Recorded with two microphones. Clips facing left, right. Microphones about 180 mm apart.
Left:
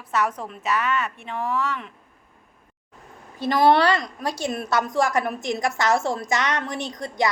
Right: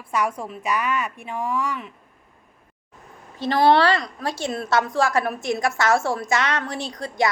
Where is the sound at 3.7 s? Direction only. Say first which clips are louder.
Right 1 dB; 20° left (ahead or behind).